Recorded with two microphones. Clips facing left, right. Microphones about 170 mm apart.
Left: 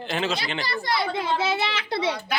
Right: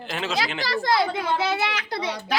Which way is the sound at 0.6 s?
90° right.